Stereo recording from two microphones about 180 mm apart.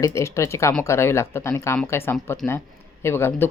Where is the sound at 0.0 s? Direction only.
15° left (ahead or behind).